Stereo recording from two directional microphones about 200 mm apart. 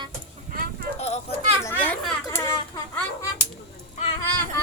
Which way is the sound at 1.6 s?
10° left (ahead or behind).